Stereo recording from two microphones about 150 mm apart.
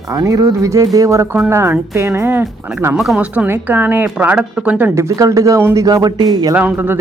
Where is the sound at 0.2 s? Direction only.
20° right (ahead or behind).